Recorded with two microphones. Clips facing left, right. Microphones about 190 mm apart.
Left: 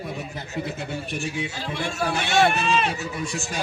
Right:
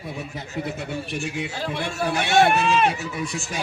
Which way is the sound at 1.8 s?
55° right (ahead or behind).